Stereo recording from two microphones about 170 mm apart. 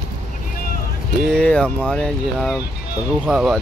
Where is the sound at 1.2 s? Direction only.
5° left (ahead or behind).